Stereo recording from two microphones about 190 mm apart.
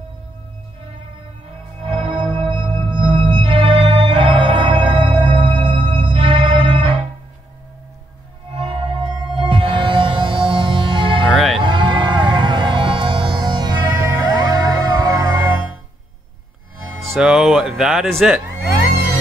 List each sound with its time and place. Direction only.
1.8 s music: 30° right (ahead or behind)
8.5 s music: 30° right (ahead or behind)
11.3 s music: centre (ahead or behind)
11.6 s music: 25° right (ahead or behind)
17.1 s music: 5° right (ahead or behind)